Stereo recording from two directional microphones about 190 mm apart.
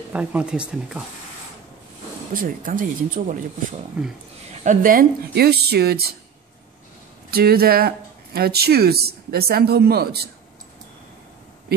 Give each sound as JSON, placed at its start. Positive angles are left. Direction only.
{"t": 0.1, "sound": "speech", "side_deg": -5}
{"t": 2.3, "sound": "speech", "side_deg": -45}
{"t": 4.0, "sound": "speech", "side_deg": -5}
{"t": 4.5, "sound": "speech", "side_deg": -45}
{"t": 7.2, "sound": "speech", "side_deg": -55}